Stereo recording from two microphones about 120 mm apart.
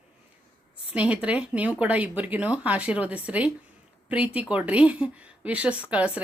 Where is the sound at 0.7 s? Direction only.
10° right (ahead or behind).